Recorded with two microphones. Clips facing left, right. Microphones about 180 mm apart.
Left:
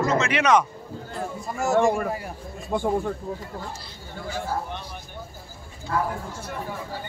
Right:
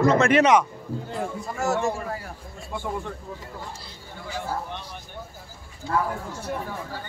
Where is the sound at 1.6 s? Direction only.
10° left (ahead or behind).